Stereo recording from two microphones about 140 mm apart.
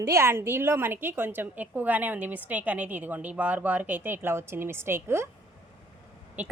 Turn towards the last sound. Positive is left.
turn(degrees=-15)  # may be behind; listen again after turning